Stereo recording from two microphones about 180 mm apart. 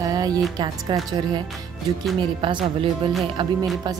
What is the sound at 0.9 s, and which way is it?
Speech, 25° right (ahead or behind).